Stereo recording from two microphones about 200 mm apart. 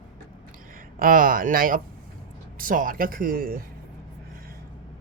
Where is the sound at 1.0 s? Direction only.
45° right (ahead or behind).